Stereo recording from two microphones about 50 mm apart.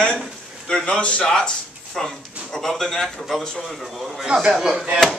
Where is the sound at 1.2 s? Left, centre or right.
Centre.